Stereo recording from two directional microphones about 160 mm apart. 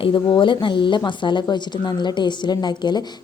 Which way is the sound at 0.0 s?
35° left (ahead or behind).